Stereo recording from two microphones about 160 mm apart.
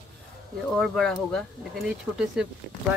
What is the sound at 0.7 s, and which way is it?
Speech, centre (ahead or behind).